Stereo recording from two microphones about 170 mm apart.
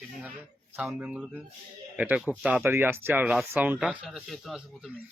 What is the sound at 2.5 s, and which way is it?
Speech, 10° right (ahead or behind).